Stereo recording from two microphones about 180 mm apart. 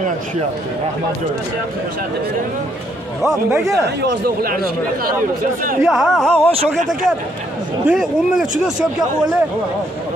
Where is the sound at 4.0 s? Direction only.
60° right (ahead or behind).